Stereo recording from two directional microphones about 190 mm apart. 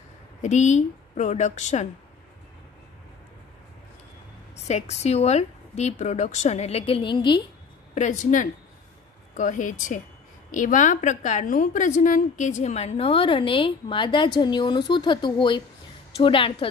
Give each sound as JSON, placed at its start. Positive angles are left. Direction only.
{"t": 0.4, "sound": "a woman's voice", "side_deg": 40}
{"t": 4.6, "sound": "a woman's voice", "side_deg": 35}
{"t": 7.9, "sound": "a woman's voice", "side_deg": 40}